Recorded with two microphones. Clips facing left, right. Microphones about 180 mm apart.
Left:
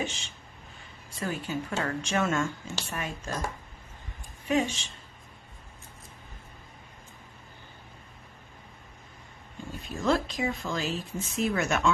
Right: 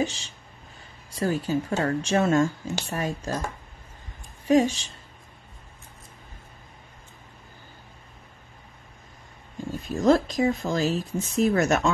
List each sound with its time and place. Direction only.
0.0 s speech: 35° right (ahead or behind)
4.5 s speech: 40° right (ahead or behind)
9.7 s speech: 40° right (ahead or behind)